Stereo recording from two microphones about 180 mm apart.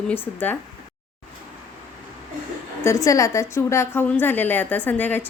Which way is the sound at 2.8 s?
20° left (ahead or behind).